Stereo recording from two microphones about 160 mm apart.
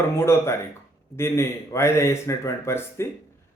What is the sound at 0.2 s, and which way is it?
Speech, 15° left (ahead or behind).